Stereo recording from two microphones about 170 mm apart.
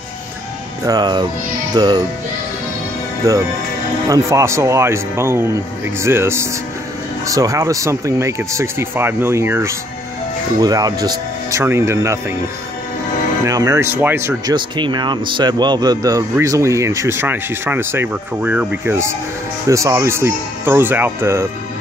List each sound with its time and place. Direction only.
0.8 s speech: 25° right (ahead or behind)
3.2 s speech: 20° right (ahead or behind)
13.5 s speech: 20° right (ahead or behind)
14.5 s speech: 25° right (ahead or behind)